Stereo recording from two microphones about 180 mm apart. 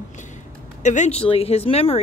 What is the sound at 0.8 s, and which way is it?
Speech, 40° left (ahead or behind).